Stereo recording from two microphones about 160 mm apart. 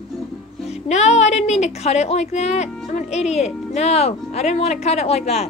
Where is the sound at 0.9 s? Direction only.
45° left (ahead or behind).